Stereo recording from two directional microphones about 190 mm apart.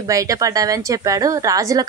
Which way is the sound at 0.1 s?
20° right (ahead or behind).